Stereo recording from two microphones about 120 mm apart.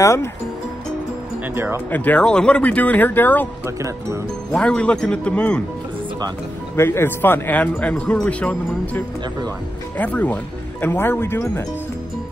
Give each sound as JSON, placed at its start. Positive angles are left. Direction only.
{"t": 0.0, "sound": "speech", "side_deg": 25}
{"t": 1.5, "sound": "speech", "side_deg": -20}
{"t": 1.9, "sound": "speech", "side_deg": 15}
{"t": 3.6, "sound": "speech", "side_deg": -25}
{"t": 4.5, "sound": "speech", "side_deg": 10}
{"t": 6.8, "sound": "speech", "side_deg": 20}